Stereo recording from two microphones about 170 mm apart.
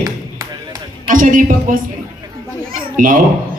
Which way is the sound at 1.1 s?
50° right (ahead or behind).